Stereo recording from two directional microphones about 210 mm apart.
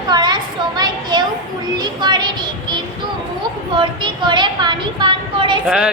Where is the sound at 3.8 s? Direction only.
20° right (ahead or behind).